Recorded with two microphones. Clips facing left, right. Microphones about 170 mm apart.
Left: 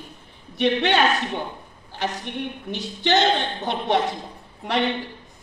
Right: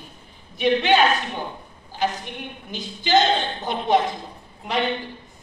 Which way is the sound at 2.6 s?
70° left (ahead or behind).